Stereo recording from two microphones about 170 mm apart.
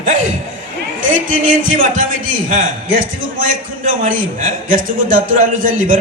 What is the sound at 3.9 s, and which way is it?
A man's voice, 50° right (ahead or behind).